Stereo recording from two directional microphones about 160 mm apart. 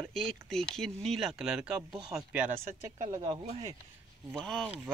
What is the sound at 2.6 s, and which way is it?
Speech, 50° right (ahead or behind).